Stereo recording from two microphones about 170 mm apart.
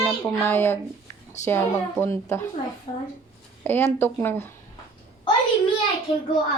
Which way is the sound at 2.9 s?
30° left (ahead or behind).